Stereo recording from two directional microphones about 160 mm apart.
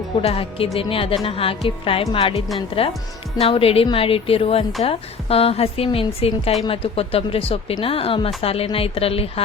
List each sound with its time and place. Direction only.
0.2 s a woman's voice: 35° left (ahead or behind)